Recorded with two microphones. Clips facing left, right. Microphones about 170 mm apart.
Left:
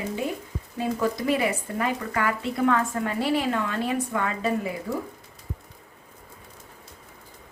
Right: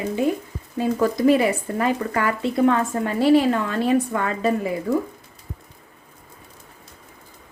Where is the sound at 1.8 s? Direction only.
30° right (ahead or behind).